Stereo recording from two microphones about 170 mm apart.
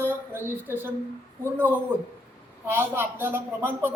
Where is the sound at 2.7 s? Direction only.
15° right (ahead or behind).